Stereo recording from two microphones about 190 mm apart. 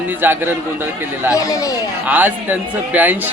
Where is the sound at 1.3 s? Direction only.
15° left (ahead or behind).